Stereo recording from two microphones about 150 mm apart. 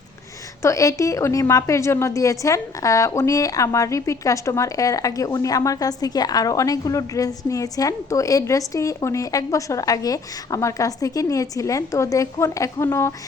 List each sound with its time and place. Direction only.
0.6 s a woman's voice: 20° left (ahead or behind)